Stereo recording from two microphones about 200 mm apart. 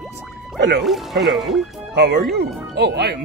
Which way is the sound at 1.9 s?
55° right (ahead or behind).